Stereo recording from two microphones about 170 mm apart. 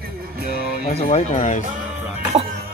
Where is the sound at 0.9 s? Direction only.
40° left (ahead or behind).